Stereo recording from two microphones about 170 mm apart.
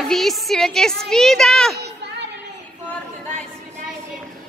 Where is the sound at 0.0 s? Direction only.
Centre (ahead or behind).